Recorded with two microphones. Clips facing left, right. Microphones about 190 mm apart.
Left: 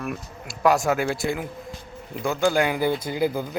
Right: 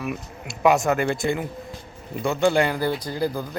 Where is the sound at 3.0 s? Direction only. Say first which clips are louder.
Left 2 dB; 20° left (ahead or behind).